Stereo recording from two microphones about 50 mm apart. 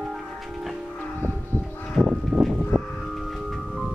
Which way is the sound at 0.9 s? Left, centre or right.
Left.